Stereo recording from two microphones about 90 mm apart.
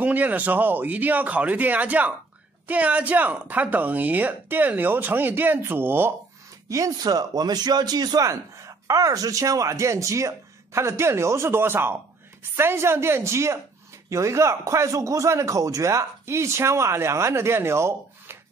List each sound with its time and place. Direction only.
0.0 s speech: 15° right (ahead or behind)
6.7 s a man's voice: 45° right (ahead or behind)
8.3 s a man's voice: 35° right (ahead or behind)